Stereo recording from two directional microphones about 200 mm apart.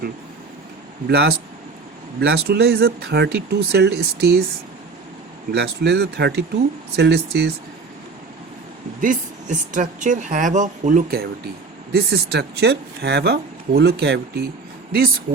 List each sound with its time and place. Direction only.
1.0 s speech: 55° right (ahead or behind)
5.5 s speech: 55° right (ahead or behind)
9.0 s speech: 40° right (ahead or behind); by 14.4 s 55° right (ahead or behind)